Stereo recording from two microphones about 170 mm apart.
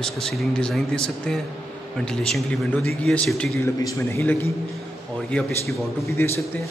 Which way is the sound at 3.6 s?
15° left (ahead or behind).